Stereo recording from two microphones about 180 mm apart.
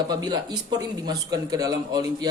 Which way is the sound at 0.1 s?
20° right (ahead or behind).